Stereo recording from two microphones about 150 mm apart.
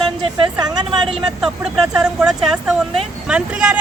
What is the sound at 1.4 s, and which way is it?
Speech, 5° right (ahead or behind).